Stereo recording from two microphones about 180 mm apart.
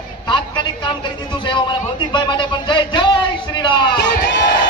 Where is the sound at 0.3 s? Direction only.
25° left (ahead or behind).